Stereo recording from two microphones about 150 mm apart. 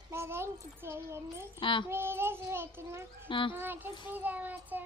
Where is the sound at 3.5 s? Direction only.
15° right (ahead or behind).